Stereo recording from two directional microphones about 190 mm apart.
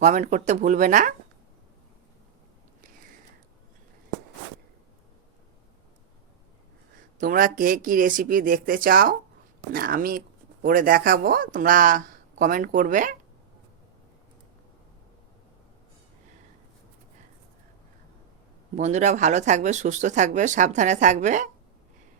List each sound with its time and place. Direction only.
0.0 s speech: 40° right (ahead or behind)
7.2 s speech: 45° right (ahead or behind)
18.8 s speech: 35° right (ahead or behind)